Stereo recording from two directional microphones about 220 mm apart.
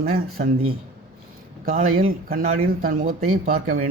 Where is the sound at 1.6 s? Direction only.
40° right (ahead or behind).